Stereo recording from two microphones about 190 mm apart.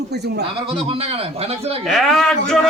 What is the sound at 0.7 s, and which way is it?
A man's voice, 30° right (ahead or behind).